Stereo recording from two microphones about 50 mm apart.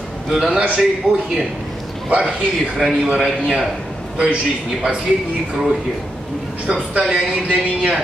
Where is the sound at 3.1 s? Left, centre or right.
Centre.